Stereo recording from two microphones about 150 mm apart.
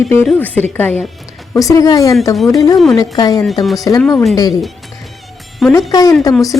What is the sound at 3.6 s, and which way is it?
Speech, centre (ahead or behind).